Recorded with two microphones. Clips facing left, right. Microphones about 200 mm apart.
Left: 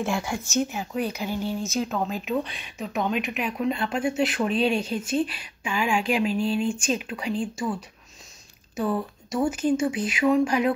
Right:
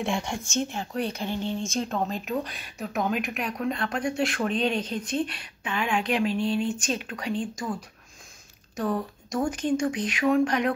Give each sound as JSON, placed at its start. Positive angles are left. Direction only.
{"t": 0.0, "sound": "speech", "side_deg": 5}
{"t": 8.7, "sound": "speech", "side_deg": 5}